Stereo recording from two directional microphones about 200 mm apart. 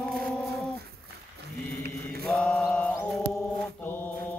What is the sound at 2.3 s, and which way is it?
Mantra, 5° left (ahead or behind).